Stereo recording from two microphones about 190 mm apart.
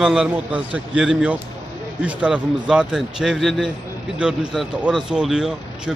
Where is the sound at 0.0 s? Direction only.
5° right (ahead or behind).